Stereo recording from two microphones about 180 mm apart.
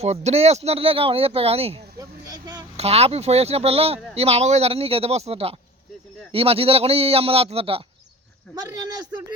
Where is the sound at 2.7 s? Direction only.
35° right (ahead or behind).